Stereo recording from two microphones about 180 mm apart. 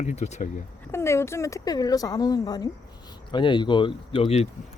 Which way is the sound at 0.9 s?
15° left (ahead or behind).